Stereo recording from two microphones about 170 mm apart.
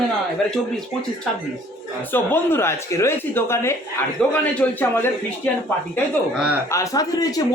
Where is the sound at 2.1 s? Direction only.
10° left (ahead or behind).